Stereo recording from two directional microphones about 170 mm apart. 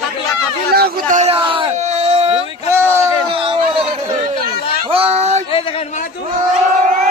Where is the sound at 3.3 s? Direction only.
30° right (ahead or behind).